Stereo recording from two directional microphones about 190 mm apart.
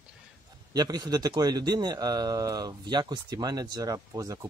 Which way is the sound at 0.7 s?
20° right (ahead or behind).